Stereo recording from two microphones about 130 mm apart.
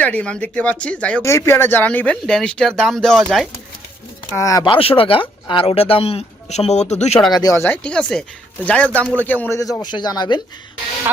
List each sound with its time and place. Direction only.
0.0 s speech: 10° left (ahead or behind)
1.2 s speech: 20° left (ahead or behind); by 3.5 s centre (ahead or behind)
4.4 s speech: 25° left (ahead or behind)
4.7 s speech: 45° left (ahead or behind)
7.3 s speech: 25° left (ahead or behind)
9.6 s speech: 25° left (ahead or behind)